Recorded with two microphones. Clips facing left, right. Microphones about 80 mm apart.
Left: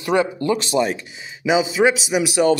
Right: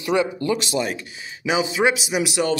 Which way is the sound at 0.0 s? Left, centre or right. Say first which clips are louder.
Left 2 dB; left.